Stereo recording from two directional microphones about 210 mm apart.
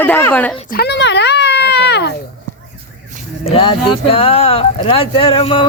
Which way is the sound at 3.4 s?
25° left (ahead or behind).